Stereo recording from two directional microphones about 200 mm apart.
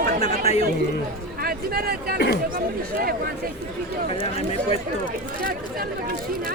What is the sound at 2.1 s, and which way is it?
Speech, 55° left (ahead or behind).